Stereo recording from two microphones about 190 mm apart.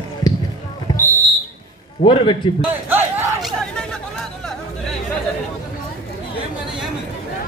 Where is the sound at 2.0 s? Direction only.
25° left (ahead or behind).